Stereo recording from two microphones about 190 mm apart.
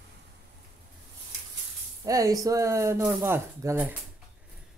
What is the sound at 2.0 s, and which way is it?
Speech, 15° right (ahead or behind).